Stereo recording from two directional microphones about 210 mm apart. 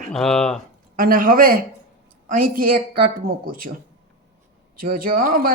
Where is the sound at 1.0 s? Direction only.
45° right (ahead or behind).